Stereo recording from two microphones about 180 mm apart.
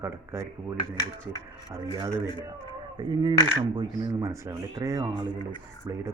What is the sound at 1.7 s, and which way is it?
Speech, 15° right (ahead or behind).